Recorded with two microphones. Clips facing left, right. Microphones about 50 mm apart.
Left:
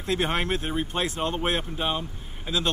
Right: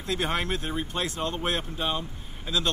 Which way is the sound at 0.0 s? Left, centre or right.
Left.